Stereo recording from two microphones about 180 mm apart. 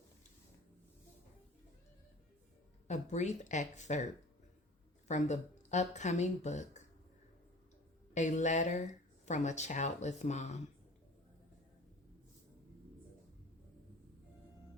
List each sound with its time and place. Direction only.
2.8 s speech: 40° left (ahead or behind)
5.0 s speech: 40° left (ahead or behind)
8.1 s speech: 40° left (ahead or behind)